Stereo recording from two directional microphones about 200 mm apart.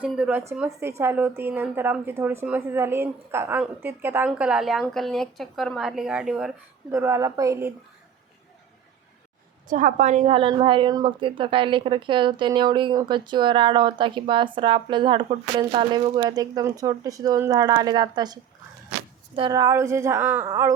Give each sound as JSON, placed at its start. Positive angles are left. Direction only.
{"t": 0.0, "sound": "a woman's voice", "side_deg": -5}
{"t": 9.6, "sound": "a woman's voice", "side_deg": -40}
{"t": 19.4, "sound": "a woman's voice", "side_deg": -20}